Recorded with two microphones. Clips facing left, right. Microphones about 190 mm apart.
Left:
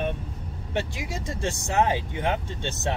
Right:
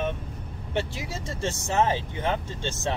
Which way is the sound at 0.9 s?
15° left (ahead or behind).